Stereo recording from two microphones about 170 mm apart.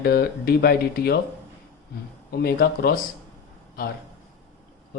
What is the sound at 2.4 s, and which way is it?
Speech, 65° left (ahead or behind).